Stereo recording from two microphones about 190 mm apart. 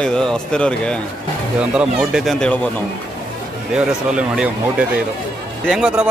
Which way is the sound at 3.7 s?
5° right (ahead or behind).